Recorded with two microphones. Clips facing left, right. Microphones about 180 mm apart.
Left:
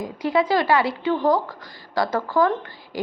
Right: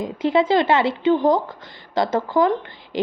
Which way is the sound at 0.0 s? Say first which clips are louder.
Right 3 dB; 25° right (ahead or behind).